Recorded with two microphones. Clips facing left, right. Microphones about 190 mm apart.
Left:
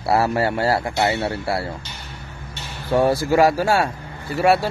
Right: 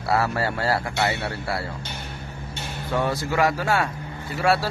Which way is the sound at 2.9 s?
30° left (ahead or behind).